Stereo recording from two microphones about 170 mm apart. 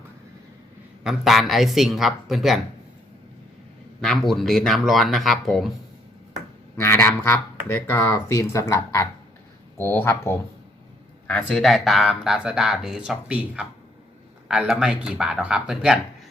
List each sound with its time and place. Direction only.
1.0 s speech: centre (ahead or behind)
4.0 s speech: centre (ahead or behind)
6.7 s speech: 15° left (ahead or behind); by 16.0 s 5° right (ahead or behind)